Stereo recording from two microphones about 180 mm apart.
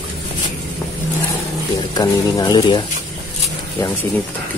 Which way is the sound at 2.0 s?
20° left (ahead or behind).